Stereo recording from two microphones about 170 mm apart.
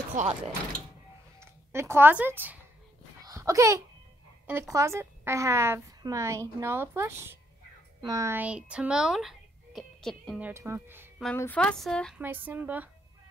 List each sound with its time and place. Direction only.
0.2 s speech: 50° right (ahead or behind)
1.4 s speech: 15° right (ahead or behind)
3.2 s a sound: 20° right (ahead or behind)
4.5 s a woman's voice: 15° right (ahead or behind); by 10.4 s centre (ahead or behind)
10.4 s a woman's voice: 15° right (ahead or behind)
11.3 s speech: 10° left (ahead or behind)
12.2 s a woman's voice: 10° right (ahead or behind)